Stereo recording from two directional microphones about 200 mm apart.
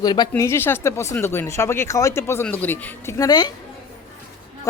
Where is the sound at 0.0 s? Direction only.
20° left (ahead or behind).